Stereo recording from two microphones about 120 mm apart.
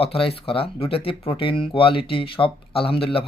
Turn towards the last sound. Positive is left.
turn(degrees=50)  # may be behind; listen again after turning